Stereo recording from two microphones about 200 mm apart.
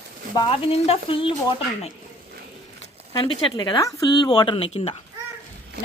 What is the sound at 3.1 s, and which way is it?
Speech, 20° left (ahead or behind).